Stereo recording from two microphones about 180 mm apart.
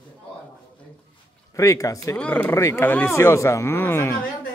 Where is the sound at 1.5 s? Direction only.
15° left (ahead or behind).